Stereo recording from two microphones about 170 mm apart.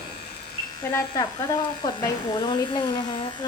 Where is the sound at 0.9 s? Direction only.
20° left (ahead or behind).